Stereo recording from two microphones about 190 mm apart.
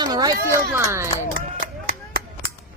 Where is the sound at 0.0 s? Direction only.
20° right (ahead or behind).